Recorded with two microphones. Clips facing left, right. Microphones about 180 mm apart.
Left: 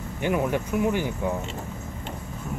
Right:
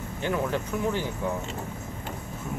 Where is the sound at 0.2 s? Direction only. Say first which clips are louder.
Left 3 dB; 15° left (ahead or behind).